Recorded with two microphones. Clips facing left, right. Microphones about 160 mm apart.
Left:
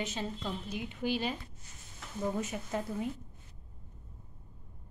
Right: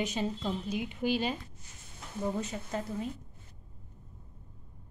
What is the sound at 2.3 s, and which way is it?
Speech, 5° left (ahead or behind).